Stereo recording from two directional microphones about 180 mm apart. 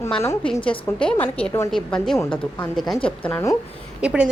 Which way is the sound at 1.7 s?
Centre (ahead or behind).